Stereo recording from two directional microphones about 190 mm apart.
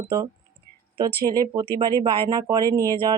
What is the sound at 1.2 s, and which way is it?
Speech, 20° right (ahead or behind).